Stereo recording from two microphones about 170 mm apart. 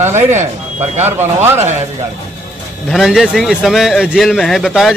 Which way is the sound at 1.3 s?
40° right (ahead or behind).